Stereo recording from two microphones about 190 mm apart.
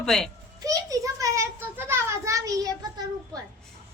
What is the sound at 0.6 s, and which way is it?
A child's voice, 20° right (ahead or behind).